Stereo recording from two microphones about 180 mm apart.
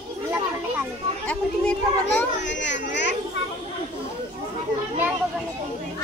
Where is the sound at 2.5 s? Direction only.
80° left.